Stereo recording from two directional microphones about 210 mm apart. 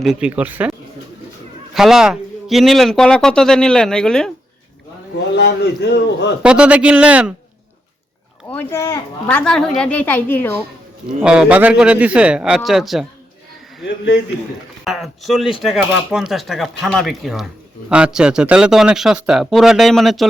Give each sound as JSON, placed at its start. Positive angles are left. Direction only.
{"t": 0.0, "sound": "speech", "side_deg": -5}
{"t": 1.7, "sound": "speech", "side_deg": 0}
{"t": 5.1, "sound": "a man's voice", "side_deg": 55}
{"t": 6.4, "sound": "speech", "side_deg": -5}
{"t": 8.4, "sound": "speech", "side_deg": 10}
{"t": 11.2, "sound": "speech", "side_deg": -5}
{"t": 14.8, "sound": "speech", "side_deg": 0}